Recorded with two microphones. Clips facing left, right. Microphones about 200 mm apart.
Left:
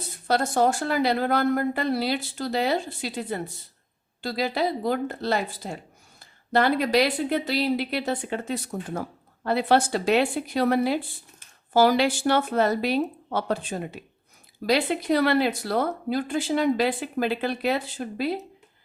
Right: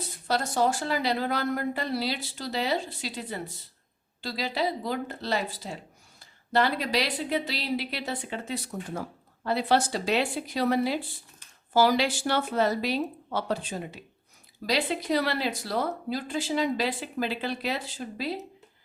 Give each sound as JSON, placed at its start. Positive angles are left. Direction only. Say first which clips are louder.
{"t": 0.3, "sound": "speech", "louder": "left 4 dB", "side_deg": 50}